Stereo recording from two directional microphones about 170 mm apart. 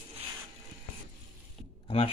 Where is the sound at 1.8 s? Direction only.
35° left (ahead or behind).